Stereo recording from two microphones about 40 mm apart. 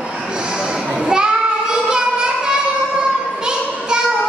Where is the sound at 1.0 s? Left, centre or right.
Right.